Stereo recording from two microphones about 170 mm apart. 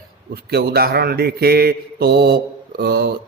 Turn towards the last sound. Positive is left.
turn(degrees=-70)  # may be behind; listen again after turning